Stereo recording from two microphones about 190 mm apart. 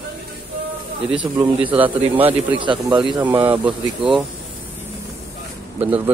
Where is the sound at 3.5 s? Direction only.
5° right (ahead or behind).